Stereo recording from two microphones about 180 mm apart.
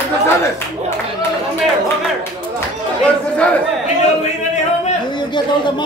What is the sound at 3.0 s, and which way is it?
Chatter, 5° left (ahead or behind).